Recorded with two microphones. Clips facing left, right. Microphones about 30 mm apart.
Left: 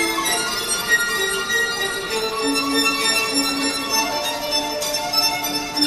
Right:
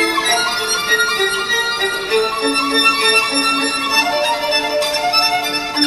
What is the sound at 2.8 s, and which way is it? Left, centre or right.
Music, right.